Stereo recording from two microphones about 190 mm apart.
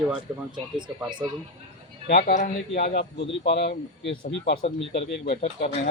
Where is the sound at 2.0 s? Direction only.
50° left (ahead or behind).